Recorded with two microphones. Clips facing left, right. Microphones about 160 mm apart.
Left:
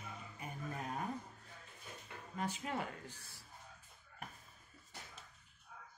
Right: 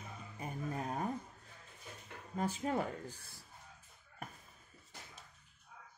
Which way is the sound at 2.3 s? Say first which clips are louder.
Right 5 dB; 35° right (ahead or behind).